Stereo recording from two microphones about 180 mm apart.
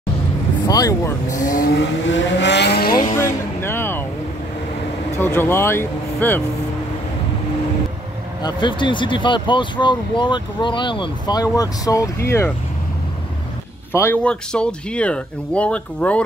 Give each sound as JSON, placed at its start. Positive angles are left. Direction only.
{"t": 0.7, "sound": "speech", "side_deg": 20}
{"t": 1.3, "sound": "speech", "side_deg": 50}
{"t": 1.8, "sound": "vehicle", "side_deg": 85}
{"t": 3.0, "sound": "music", "side_deg": 15}
{"t": 5.1, "sound": "speech", "side_deg": 10}
{"t": 8.4, "sound": "speech", "side_deg": 25}
{"t": 13.9, "sound": "speech", "side_deg": 10}